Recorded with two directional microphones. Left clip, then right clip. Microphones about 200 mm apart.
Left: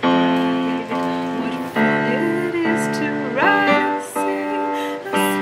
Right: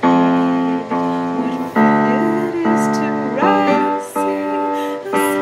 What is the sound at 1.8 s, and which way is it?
Music, 25° right (ahead or behind).